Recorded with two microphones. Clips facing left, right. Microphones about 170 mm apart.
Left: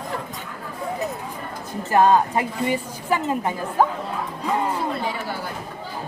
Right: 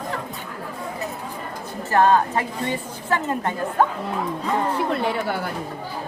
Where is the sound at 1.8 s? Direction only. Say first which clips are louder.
Left 1 dB; 15° left (ahead or behind).